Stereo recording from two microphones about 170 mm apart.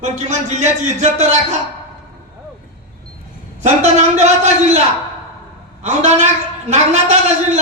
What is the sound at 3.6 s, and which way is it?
A man's voice, 45° right (ahead or behind).